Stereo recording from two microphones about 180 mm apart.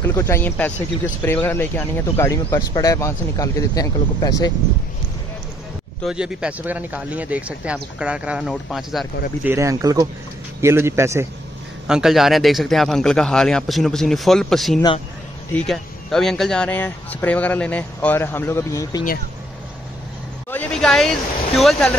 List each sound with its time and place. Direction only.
0.0 s speech: 15° left (ahead or behind)
6.0 s speech: 5° right (ahead or behind)
9.4 s speech: 15° right (ahead or behind)
11.9 s a man's voice: centre (ahead or behind); by 19.0 s 20° left (ahead or behind)
20.5 s a sound: 5° left (ahead or behind)
21.5 s a man's voice: centre (ahead or behind)